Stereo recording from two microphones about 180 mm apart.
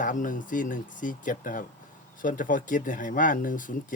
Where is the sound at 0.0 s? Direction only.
45° left (ahead or behind).